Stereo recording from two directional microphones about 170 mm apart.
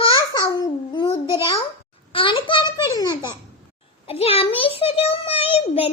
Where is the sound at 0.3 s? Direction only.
20° left (ahead or behind).